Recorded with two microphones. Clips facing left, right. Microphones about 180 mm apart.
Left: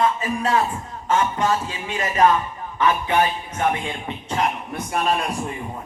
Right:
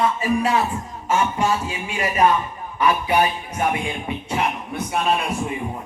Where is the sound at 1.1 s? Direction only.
10° right (ahead or behind).